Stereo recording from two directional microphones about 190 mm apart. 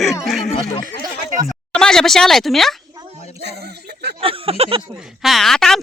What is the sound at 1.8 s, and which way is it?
Speech, 5° left (ahead or behind).